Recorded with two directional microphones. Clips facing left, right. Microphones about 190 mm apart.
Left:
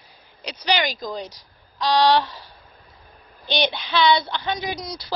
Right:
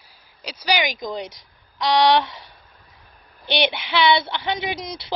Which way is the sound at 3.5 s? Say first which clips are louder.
Right 1 dB; 20° right (ahead or behind).